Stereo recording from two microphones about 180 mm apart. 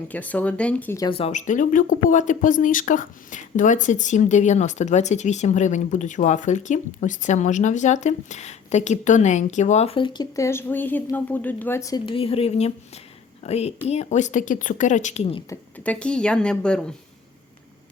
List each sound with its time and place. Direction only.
0.1 s speech: 10° left (ahead or behind)
0.9 s speech: 25° left (ahead or behind)
15.8 s speech: 5° left (ahead or behind)